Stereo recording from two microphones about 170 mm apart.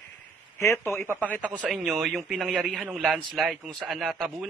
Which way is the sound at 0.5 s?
15° left (ahead or behind).